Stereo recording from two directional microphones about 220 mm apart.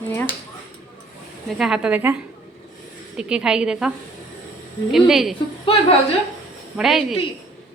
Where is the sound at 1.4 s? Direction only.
Centre (ahead or behind).